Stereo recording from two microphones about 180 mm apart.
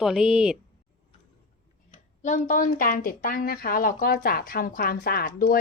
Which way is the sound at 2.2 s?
45° left (ahead or behind).